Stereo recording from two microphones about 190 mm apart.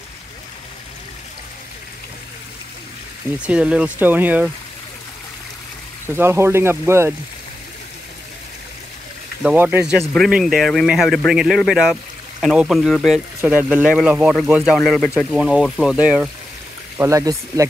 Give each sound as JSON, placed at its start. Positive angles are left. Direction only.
{"t": 3.3, "sound": "speech", "side_deg": -5}
{"t": 6.0, "sound": "speech", "side_deg": -15}
{"t": 9.4, "sound": "speech", "side_deg": -5}
{"t": 17.0, "sound": "speech", "side_deg": -15}